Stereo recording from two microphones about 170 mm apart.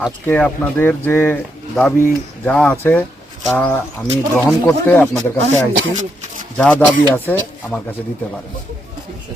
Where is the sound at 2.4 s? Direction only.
10° left (ahead or behind).